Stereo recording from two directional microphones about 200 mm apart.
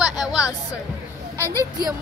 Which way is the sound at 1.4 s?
15° left (ahead or behind).